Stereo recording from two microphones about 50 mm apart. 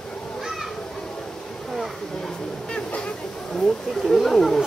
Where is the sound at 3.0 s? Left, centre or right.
Centre.